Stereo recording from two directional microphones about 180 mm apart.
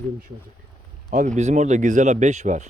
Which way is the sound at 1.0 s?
40° right (ahead or behind).